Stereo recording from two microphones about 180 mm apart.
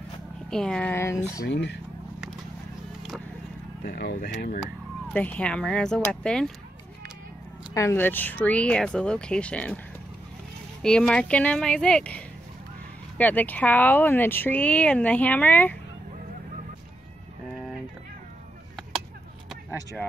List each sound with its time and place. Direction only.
0.5 s speech: 5° left (ahead or behind)
1.5 s speech: 70° left (ahead or behind)
3.8 s speech: 65° left (ahead or behind)
5.1 s speech: 10° left (ahead or behind)
7.7 s speech: 15° left (ahead or behind)
10.8 s speech: 5° left (ahead or behind)